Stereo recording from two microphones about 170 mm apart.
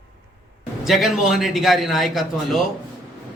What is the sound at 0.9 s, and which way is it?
A man's voice, centre (ahead or behind).